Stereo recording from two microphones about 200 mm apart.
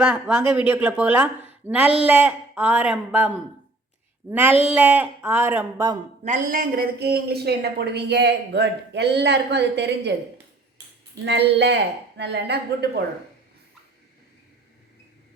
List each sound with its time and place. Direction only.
0.0 s speech: 10° right (ahead or behind)
1.5 s a sound: 5° right (ahead or behind)
2.0 s speech: 5° right (ahead or behind)
6.2 s a man's voice: 40° right (ahead or behind); by 10.1 s 60° right (ahead or behind)
11.3 s a man's voice: 60° right (ahead or behind)